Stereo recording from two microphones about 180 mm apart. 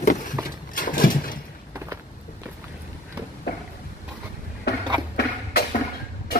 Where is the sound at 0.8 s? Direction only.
50° left (ahead or behind).